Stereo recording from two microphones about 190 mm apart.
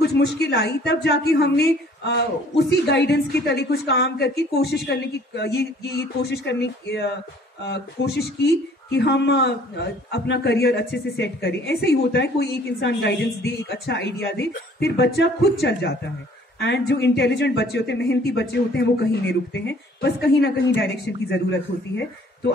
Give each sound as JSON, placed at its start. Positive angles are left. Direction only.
{"t": 0.0, "sound": "speech", "side_deg": 60}